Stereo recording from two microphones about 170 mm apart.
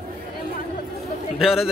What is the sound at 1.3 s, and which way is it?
Speech, centre (ahead or behind).